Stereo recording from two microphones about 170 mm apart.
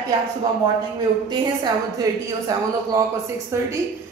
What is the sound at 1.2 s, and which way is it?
A woman's voice, 25° right (ahead or behind).